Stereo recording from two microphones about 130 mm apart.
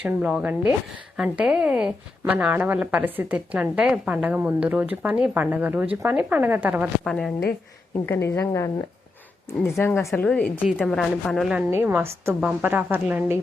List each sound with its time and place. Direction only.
0.0 s a woman's voice: 10° right (ahead or behind)
7.0 s a woman's voice: 5° left (ahead or behind)
8.0 s a woman's voice: 15° left (ahead or behind)
10.2 s a woman's voice: 10° left (ahead or behind)
11.5 s a woman's voice: 15° right (ahead or behind)